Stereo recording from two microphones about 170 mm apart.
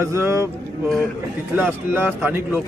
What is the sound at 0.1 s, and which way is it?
Speech, 15° right (ahead or behind).